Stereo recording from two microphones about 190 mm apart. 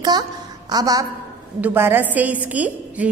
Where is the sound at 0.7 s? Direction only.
20° right (ahead or behind).